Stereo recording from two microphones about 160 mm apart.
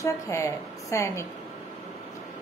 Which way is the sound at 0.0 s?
20° left (ahead or behind).